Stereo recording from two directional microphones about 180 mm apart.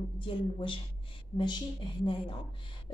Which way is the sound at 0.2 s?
25° left (ahead or behind).